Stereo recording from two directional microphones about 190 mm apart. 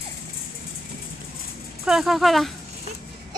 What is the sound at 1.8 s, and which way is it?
Speech, centre (ahead or behind).